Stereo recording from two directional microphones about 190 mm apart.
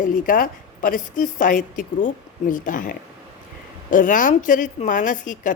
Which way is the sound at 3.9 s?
45° left (ahead or behind).